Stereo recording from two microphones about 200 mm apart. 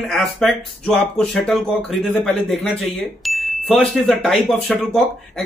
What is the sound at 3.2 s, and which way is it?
Ding, centre (ahead or behind).